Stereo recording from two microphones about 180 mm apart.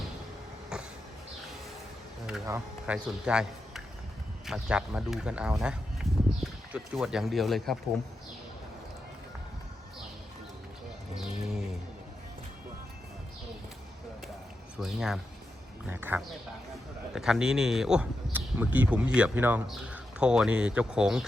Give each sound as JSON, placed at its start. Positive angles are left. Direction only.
{"t": 0.7, "sound": "a sound", "side_deg": -5}
{"t": 2.5, "sound": "speech", "side_deg": -5}
{"t": 11.1, "sound": "bird", "side_deg": -5}
{"t": 14.8, "sound": "speech", "side_deg": 0}